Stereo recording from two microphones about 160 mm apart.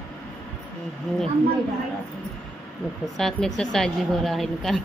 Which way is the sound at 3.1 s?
Centre (ahead or behind).